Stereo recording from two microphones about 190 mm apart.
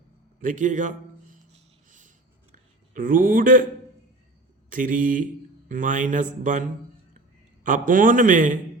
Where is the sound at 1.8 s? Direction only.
40° right (ahead or behind).